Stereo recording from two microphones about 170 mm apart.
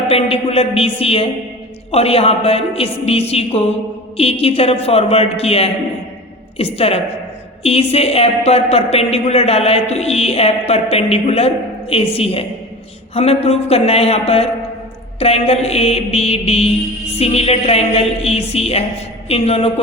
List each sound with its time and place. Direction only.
0.1 s a woman's voice: 35° left (ahead or behind)